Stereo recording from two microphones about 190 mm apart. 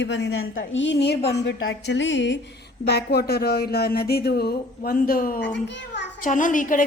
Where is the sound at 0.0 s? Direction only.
65° left (ahead or behind).